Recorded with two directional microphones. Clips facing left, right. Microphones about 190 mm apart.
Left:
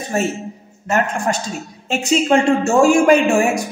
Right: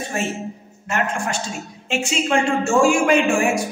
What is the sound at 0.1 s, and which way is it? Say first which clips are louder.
Speech: left 6 dB; 40° left (ahead or behind).